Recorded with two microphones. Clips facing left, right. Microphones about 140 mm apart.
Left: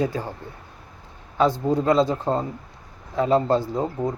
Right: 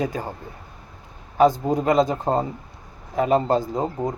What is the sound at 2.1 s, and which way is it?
Speech, 20° right (ahead or behind).